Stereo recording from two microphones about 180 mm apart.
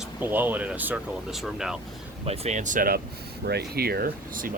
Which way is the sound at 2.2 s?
35° right (ahead or behind).